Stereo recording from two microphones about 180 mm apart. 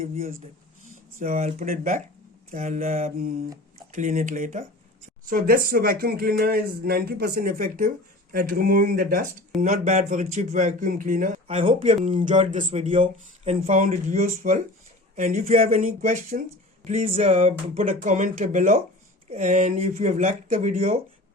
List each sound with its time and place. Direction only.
0.0 s speech: 50° right (ahead or behind)
1.4 s speech: 35° right (ahead or behind)
1.6 s speech: 50° right (ahead or behind)
11.4 s speech: 30° right (ahead or behind)